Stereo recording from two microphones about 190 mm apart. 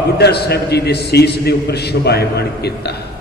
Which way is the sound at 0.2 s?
60° left (ahead or behind).